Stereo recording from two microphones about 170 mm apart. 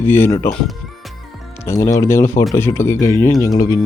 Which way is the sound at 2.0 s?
15° left (ahead or behind).